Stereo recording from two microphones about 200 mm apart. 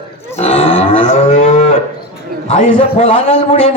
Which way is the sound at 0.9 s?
35° left (ahead or behind).